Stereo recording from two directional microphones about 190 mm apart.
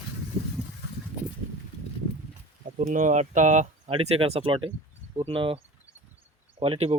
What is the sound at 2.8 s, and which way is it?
Speech, 40° right (ahead or behind).